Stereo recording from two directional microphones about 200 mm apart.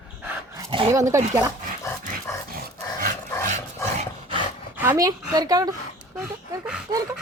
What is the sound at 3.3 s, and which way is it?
Dog, 15° left (ahead or behind).